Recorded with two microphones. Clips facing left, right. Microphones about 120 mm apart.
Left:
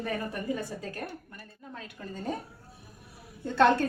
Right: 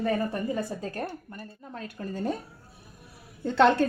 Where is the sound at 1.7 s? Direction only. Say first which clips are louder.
Right 6 dB; 45° right (ahead or behind).